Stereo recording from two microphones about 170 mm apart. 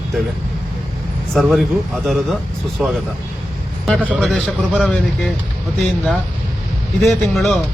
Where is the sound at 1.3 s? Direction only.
Centre (ahead or behind).